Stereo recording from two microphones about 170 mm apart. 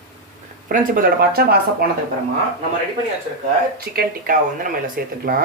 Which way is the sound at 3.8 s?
60° right (ahead or behind).